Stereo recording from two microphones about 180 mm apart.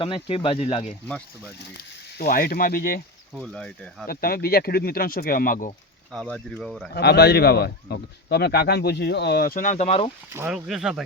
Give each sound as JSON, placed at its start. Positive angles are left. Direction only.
{"t": 0.0, "sound": "speech", "side_deg": 30}
{"t": 2.1, "sound": "speech", "side_deg": 55}
{"t": 3.3, "sound": "speech", "side_deg": 0}
{"t": 4.0, "sound": "a man's voice", "side_deg": 55}
{"t": 6.1, "sound": "speech", "side_deg": 5}
{"t": 6.9, "sound": "a man's voice", "side_deg": 65}
{"t": 10.3, "sound": "speech", "side_deg": -10}